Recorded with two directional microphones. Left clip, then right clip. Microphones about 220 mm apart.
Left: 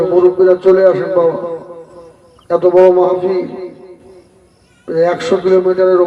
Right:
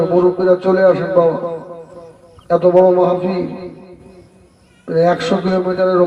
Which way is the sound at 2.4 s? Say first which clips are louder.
Left 2 dB; 50° right (ahead or behind).